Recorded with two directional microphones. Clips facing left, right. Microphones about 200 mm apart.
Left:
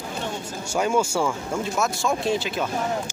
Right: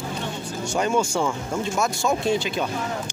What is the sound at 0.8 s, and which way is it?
Speech, 5° left (ahead or behind).